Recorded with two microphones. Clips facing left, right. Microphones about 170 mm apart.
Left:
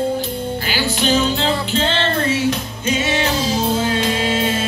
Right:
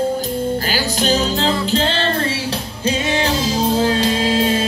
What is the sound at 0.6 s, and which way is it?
Music, 40° right (ahead or behind).